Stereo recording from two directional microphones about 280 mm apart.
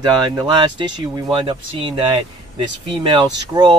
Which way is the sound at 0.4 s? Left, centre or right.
Centre.